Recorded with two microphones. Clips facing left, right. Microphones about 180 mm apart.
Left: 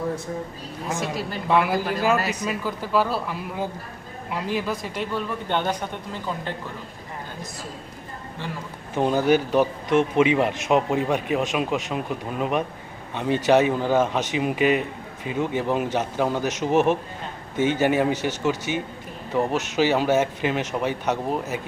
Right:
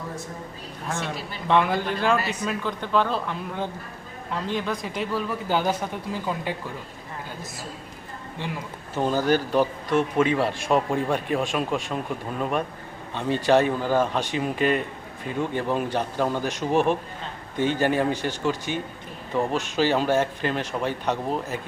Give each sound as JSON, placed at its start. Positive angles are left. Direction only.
{"t": 1.5, "sound": "a man's voice", "side_deg": 5}
{"t": 9.2, "sound": "speech", "side_deg": 10}